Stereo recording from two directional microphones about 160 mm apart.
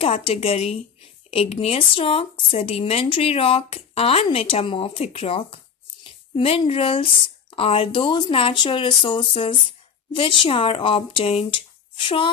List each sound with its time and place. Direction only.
0.0 s speech: 40° left (ahead or behind)